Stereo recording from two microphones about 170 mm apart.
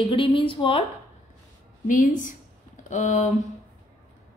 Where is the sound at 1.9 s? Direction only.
50° left (ahead or behind).